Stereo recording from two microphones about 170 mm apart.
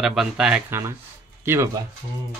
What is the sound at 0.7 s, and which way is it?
Speech, 15° right (ahead or behind).